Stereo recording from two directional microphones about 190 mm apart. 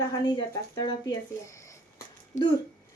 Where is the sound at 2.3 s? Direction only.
40° left (ahead or behind).